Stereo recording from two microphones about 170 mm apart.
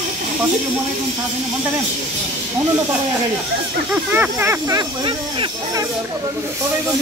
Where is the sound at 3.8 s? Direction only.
10° right (ahead or behind); by 5.8 s 25° right (ahead or behind).